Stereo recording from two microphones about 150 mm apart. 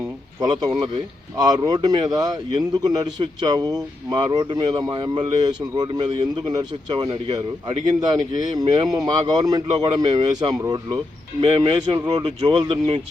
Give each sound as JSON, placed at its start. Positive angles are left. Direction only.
{"t": 0.3, "sound": "speech", "side_deg": -25}
{"t": 8.5, "sound": "speech", "side_deg": -25}
{"t": 11.3, "sound": "speech", "side_deg": -35}